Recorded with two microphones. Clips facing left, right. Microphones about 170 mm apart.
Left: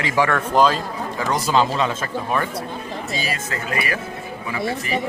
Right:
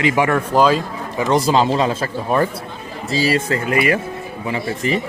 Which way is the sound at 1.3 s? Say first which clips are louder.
Right 4 dB; 30° right (ahead or behind).